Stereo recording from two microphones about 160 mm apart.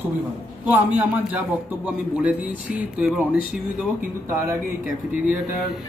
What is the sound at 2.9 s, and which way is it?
Speech, 10° right (ahead or behind).